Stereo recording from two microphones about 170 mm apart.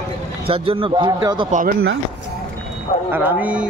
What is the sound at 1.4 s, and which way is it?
Speech, 50° right (ahead or behind).